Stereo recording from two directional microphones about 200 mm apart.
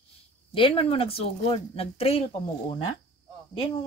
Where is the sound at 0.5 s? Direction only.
25° left (ahead or behind).